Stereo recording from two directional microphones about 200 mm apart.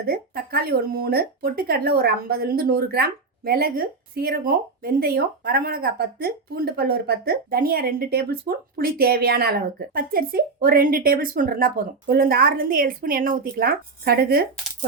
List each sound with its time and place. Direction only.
0.0 s speech: 50° right (ahead or behind)